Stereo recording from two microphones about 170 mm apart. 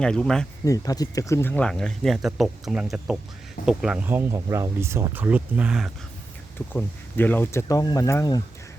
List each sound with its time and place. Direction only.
0.0 s speech: 5° left (ahead or behind)
0.6 s speech: 20° left (ahead or behind); by 5.9 s 5° right (ahead or behind)
6.7 s speech: 10° left (ahead or behind)